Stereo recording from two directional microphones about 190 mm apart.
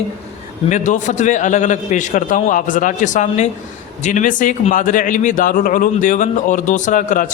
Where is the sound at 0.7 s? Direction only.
40° left (ahead or behind).